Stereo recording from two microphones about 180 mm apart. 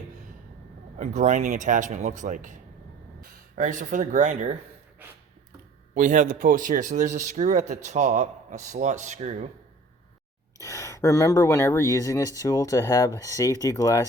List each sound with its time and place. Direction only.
0.9 s speech: 45° right (ahead or behind)
5.9 s speech: 45° right (ahead or behind)
10.6 s speech: 15° left (ahead or behind)